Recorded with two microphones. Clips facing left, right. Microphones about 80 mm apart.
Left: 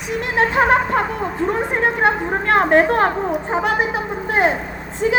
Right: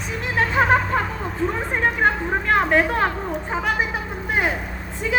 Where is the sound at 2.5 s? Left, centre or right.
Left.